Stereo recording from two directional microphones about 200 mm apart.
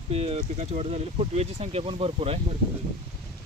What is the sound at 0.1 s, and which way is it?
Speech, 30° right (ahead or behind).